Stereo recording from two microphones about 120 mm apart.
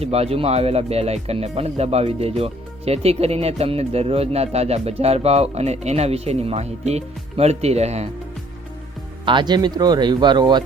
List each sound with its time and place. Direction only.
0.0 s speech: 60° right (ahead or behind)
9.2 s speech: 40° right (ahead or behind)